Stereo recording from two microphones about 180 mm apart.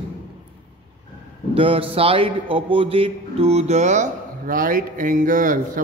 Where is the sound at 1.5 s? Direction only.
30° right (ahead or behind).